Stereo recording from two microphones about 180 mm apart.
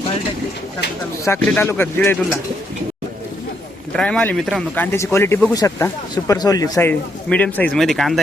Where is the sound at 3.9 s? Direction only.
5° left (ahead or behind).